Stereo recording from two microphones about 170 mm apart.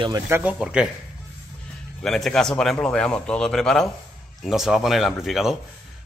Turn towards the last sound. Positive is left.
turn(degrees=0)  # may be behind; listen again after turning